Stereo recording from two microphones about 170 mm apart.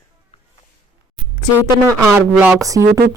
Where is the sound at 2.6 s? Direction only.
20° right (ahead or behind).